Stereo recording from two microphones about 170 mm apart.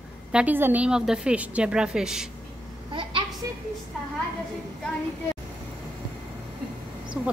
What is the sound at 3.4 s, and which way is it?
Speech, 20° right (ahead or behind).